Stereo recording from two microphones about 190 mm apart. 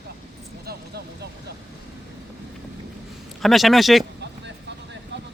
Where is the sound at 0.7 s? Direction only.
60° right (ahead or behind).